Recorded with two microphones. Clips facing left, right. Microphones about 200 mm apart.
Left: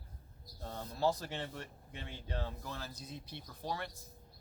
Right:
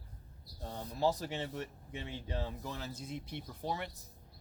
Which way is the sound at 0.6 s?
15° right (ahead or behind).